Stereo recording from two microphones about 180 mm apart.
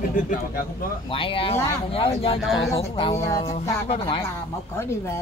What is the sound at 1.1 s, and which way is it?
Speech, 30° left (ahead or behind).